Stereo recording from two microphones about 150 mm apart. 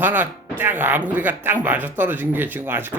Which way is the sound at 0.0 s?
10° right (ahead or behind).